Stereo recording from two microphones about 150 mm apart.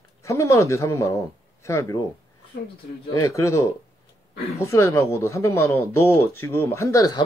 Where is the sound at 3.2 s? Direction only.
20° left (ahead or behind).